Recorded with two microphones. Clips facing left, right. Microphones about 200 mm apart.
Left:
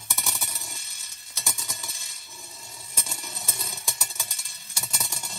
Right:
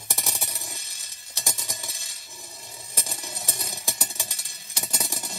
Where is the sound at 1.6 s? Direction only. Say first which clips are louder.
Right 2 dB; 30° right (ahead or behind).